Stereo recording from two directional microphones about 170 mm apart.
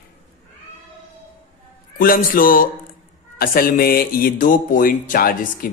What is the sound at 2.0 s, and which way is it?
Speech, 55° left (ahead or behind).